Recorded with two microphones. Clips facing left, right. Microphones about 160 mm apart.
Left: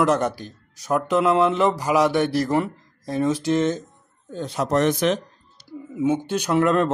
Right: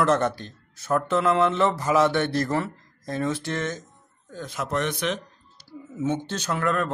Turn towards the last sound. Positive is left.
turn(degrees=25)  # may be behind; listen again after turning